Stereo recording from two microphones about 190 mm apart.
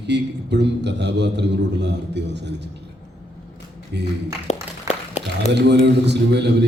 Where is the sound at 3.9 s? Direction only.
65° right (ahead or behind).